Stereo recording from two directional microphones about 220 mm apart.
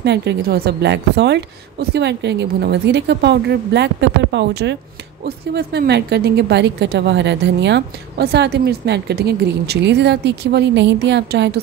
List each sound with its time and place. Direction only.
0.0 s a woman's voice: 50° right (ahead or behind)